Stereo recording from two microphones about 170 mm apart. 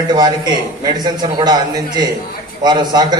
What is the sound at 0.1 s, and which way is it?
A man's voice, 25° right (ahead or behind).